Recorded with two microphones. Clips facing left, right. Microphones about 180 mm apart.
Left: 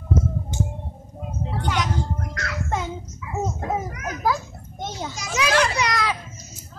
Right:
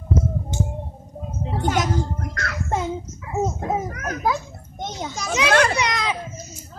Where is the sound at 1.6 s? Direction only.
45° right (ahead or behind).